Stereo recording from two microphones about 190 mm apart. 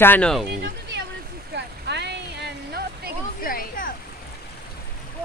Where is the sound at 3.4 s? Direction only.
50° left (ahead or behind).